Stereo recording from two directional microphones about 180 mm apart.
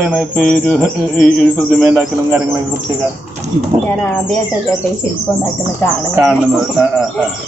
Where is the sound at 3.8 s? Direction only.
10° left (ahead or behind).